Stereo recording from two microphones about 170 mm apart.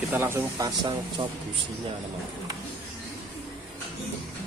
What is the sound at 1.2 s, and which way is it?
Speech, 30° right (ahead or behind).